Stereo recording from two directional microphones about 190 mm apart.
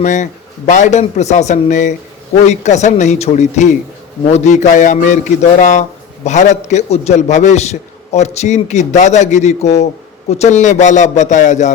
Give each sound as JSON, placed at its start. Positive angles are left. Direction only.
{"t": 0.0, "sound": "a man's voice", "side_deg": 40}